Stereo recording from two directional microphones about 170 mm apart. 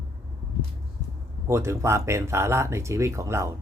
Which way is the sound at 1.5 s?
15° right (ahead or behind).